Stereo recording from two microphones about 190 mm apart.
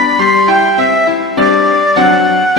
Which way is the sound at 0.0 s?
Centre (ahead or behind).